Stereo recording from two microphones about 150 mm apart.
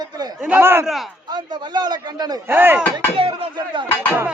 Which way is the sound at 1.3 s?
30° right (ahead or behind).